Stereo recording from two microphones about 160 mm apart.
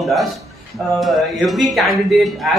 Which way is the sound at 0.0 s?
Centre (ahead or behind).